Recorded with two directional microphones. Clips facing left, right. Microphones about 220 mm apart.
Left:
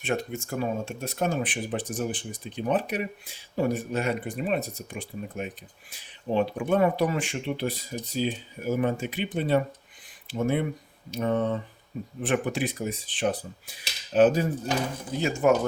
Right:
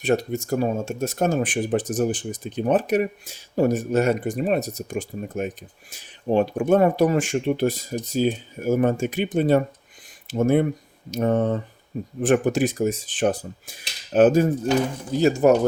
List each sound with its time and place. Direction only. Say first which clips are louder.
0.0 s speech: right 7 dB; 40° right (ahead or behind)
15.2 s speech: right 6 dB; 40° right (ahead or behind)